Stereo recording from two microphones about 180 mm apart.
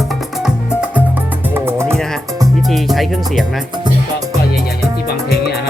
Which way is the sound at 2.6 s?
Centre (ahead or behind).